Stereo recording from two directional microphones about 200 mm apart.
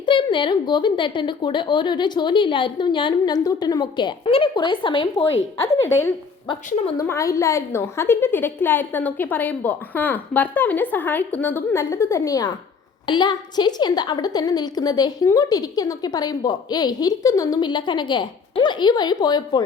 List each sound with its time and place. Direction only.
0.0 s a woman's voice: 25° left (ahead or behind)
6.7 s a woman's voice: 35° left (ahead or behind)
6.9 s a woman's voice: 15° left (ahead or behind)